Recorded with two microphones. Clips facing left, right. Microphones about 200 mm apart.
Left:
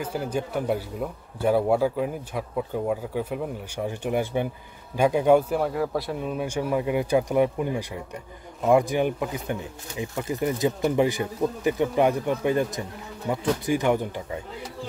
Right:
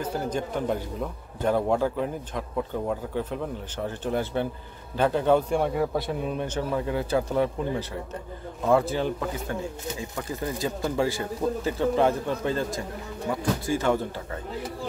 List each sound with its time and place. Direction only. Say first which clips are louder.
0.0 s a man's voice: even; 10° left (ahead or behind)
6.4 s speech: left 2 dB; 10° left (ahead or behind)